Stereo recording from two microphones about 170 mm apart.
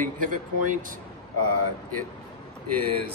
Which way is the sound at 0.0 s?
50° right (ahead or behind).